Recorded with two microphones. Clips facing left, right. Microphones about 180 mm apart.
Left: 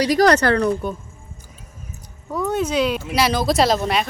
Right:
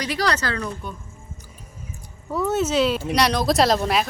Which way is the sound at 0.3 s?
65° left (ahead or behind).